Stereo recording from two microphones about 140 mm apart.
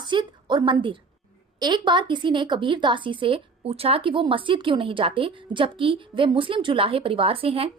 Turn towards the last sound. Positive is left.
turn(degrees=-45)  # may be behind; listen again after turning